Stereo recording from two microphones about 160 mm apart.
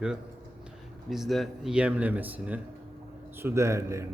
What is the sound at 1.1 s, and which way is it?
Speech, centre (ahead or behind).